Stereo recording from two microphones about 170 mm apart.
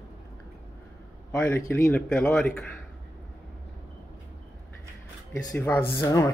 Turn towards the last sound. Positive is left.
turn(degrees=20)  # may be behind; listen again after turning